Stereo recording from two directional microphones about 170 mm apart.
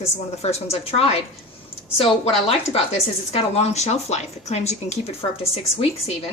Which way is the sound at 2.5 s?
35° left (ahead or behind).